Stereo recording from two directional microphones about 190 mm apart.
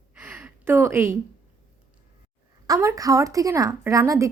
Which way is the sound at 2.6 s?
15° right (ahead or behind).